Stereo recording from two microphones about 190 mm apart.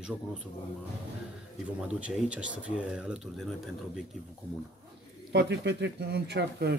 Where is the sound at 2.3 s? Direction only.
5° right (ahead or behind).